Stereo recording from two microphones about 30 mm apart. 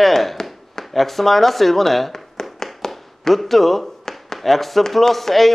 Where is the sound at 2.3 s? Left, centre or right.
Centre.